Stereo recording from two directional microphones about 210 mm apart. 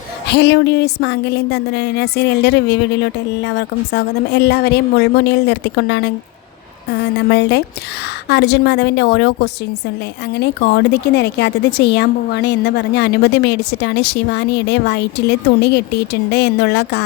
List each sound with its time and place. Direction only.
0.3 s a woman's voice: 55° left (ahead or behind)
7.3 s speech: 50° left (ahead or behind)